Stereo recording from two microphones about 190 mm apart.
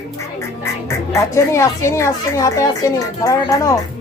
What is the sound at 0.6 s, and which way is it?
Speech, 15° left (ahead or behind).